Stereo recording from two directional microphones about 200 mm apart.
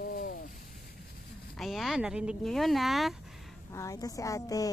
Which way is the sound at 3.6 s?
15° left (ahead or behind).